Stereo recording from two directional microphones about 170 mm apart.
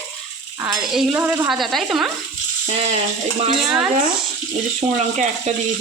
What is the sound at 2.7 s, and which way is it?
Frying, 35° right (ahead or behind).